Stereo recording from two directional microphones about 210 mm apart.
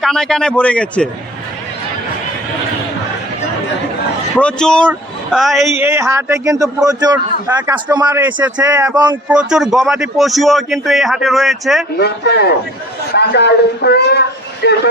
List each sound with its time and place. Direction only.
0.0 s a man's voice: centre (ahead or behind)
4.4 s a man's voice: 5° left (ahead or behind)
5.8 s a man's voice: 10° right (ahead or behind)
11.9 s speech: 50° left (ahead or behind)